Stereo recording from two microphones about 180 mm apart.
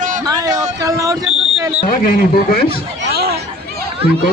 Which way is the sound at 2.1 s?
55° left (ahead or behind).